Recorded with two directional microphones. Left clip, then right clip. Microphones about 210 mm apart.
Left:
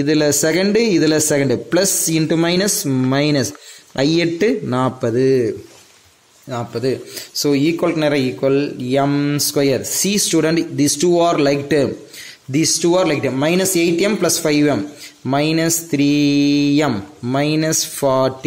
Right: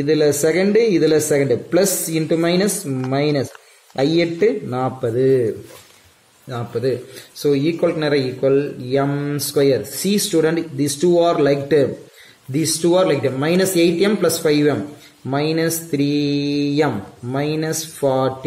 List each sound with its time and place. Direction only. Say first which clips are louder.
0.0 s speech: even; 40° left (ahead or behind)
6.5 s speech: left 1 dB; 35° left (ahead or behind)